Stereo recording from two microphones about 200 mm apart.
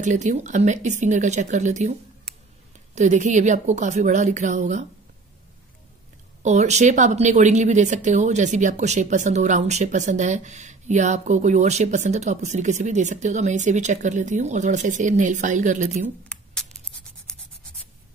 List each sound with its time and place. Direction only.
0.0 s speech: 40° right (ahead or behind)
6.4 s speech: 35° right (ahead or behind)
17.3 s writing: 5° left (ahead or behind)